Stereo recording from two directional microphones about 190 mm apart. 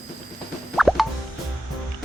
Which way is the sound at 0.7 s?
Centre (ahead or behind).